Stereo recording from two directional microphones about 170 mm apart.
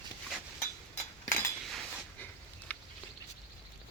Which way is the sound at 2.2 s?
10° left (ahead or behind).